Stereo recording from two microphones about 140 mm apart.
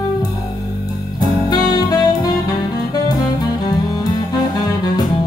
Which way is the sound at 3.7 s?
30° left (ahead or behind).